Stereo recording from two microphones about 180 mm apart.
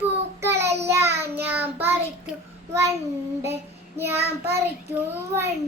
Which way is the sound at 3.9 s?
15° right (ahead or behind).